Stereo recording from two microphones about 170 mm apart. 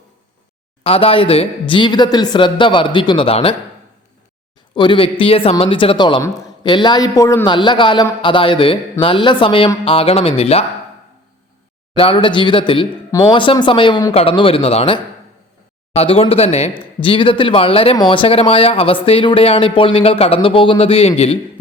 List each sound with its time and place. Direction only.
0.9 s speech: 35° left (ahead or behind)
4.7 s speech: 30° left (ahead or behind)
11.9 s speech: 30° left (ahead or behind)